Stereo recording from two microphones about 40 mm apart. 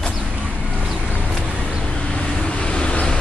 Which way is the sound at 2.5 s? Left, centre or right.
Left.